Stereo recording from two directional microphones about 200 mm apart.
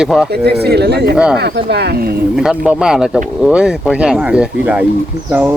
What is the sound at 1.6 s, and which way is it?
Speech, 55° right (ahead or behind).